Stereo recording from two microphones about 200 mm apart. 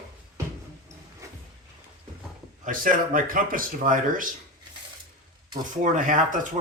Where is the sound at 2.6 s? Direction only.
45° right (ahead or behind).